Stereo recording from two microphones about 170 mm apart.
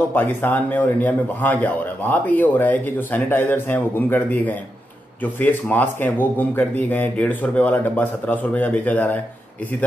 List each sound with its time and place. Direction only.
0.1 s a man's voice: 10° left (ahead or behind)